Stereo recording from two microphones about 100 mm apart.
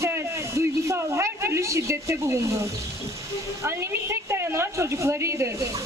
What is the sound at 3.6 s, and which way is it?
A woman's voice, 25° right (ahead or behind).